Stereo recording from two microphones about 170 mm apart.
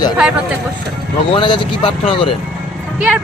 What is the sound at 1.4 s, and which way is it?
Speech, 30° left (ahead or behind).